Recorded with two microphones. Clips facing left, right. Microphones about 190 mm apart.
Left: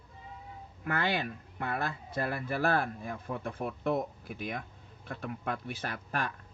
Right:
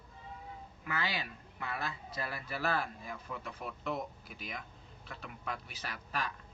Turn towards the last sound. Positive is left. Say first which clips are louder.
# left 5 dB
turn(degrees=55)  # may be behind; listen again after turning